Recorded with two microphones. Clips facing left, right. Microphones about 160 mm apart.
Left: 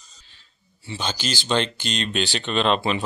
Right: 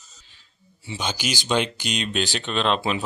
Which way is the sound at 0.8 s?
15° right (ahead or behind).